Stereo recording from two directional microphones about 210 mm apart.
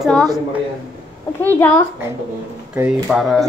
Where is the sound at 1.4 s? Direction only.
10° left (ahead or behind).